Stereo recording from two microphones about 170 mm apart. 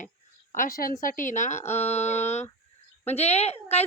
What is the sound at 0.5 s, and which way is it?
A woman's voice, 55° left (ahead or behind).